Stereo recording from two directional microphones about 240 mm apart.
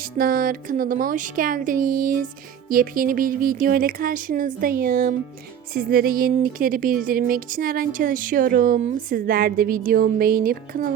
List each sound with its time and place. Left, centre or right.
0.2 s a woman's voice: right